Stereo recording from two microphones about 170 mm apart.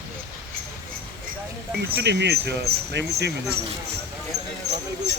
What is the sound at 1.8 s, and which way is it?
Speech, 85° right.